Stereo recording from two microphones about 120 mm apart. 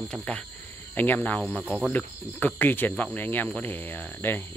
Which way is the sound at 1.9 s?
15° left (ahead or behind).